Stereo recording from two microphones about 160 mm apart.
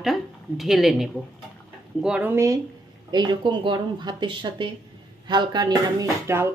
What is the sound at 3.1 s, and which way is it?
Speech, 25° right (ahead or behind).